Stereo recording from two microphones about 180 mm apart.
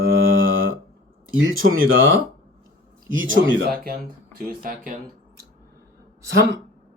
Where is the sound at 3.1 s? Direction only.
90° right.